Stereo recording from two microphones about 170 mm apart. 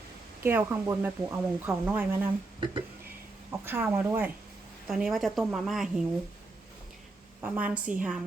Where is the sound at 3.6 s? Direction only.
10° right (ahead or behind).